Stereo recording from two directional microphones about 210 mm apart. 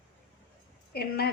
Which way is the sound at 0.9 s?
50° left (ahead or behind).